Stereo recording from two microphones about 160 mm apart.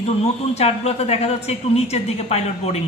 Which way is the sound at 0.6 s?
40° left (ahead or behind).